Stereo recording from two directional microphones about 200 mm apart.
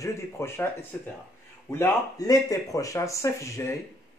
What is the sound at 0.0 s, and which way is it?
Speech, 15° left (ahead or behind).